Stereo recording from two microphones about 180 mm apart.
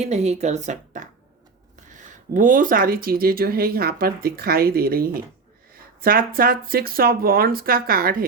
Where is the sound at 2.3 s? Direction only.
50° right (ahead or behind).